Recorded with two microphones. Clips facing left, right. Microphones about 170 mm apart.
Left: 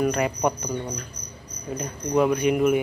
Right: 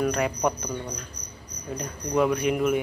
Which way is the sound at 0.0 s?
Centre (ahead or behind).